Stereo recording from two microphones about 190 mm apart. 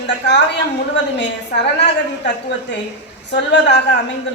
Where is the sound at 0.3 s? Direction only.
65° left (ahead or behind).